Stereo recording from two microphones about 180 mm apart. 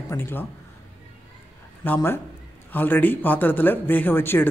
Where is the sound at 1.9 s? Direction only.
15° left (ahead or behind).